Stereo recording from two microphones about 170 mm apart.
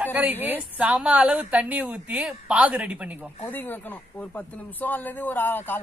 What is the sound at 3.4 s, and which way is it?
Speech, 10° left (ahead or behind).